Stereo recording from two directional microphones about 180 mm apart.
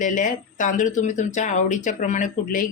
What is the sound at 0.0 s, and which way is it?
Speech, 45° left (ahead or behind).